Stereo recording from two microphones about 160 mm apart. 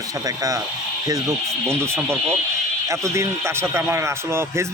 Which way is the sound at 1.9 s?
5° left (ahead or behind).